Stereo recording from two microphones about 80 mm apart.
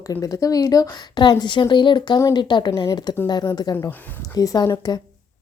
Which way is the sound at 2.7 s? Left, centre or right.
Left.